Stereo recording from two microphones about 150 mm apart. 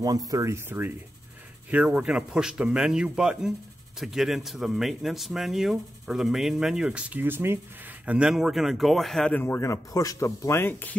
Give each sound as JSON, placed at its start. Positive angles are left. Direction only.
{"t": 0.3, "sound": "a man's voice", "side_deg": -20}